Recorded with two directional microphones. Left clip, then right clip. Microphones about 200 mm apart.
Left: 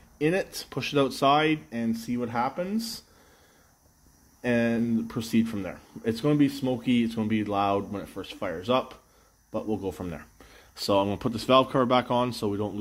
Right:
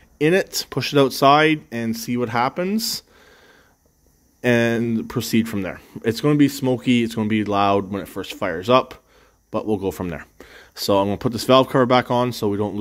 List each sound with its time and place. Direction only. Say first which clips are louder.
0.2 s speech: right 8 dB; 45° right (ahead or behind)
4.4 s speech: right 8 dB; 50° right (ahead or behind)